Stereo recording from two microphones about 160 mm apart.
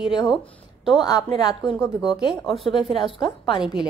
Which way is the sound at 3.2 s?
30° left (ahead or behind).